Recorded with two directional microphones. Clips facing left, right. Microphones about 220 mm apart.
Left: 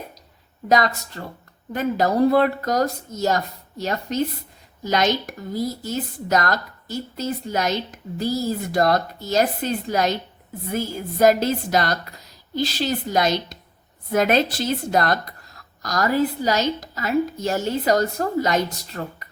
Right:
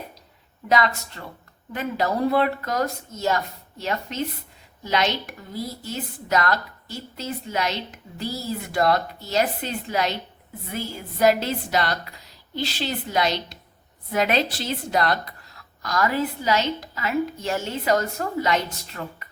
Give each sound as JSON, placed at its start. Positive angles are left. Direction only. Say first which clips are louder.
{"t": 0.7, "sound": "a woman's voice", "louder": "left 2 dB", "side_deg": 40}